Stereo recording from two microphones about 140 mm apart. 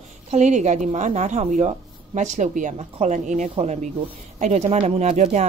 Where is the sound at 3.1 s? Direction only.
65° right (ahead or behind).